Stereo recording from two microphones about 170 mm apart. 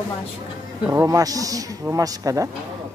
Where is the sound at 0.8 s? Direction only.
20° right (ahead or behind).